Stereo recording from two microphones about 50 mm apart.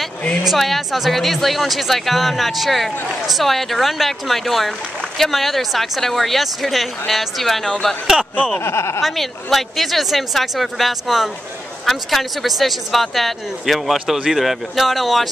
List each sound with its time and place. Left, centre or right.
0.6 s speech: centre
8.5 s speech: left
9.0 s speech: centre